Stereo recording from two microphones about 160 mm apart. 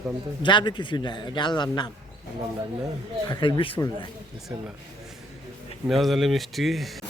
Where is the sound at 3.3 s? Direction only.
25° left (ahead or behind).